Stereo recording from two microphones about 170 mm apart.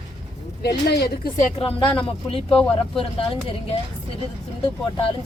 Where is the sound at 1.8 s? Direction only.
30° left (ahead or behind).